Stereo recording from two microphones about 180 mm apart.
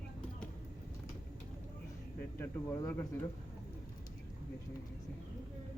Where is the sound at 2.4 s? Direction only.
15° left (ahead or behind).